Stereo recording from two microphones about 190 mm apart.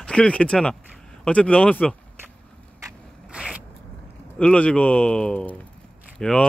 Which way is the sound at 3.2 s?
5° right (ahead or behind).